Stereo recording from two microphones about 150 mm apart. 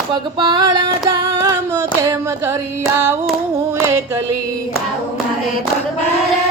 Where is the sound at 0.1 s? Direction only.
30° right (ahead or behind).